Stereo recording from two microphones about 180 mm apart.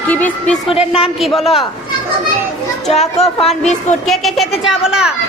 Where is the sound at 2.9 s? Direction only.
35° left (ahead or behind).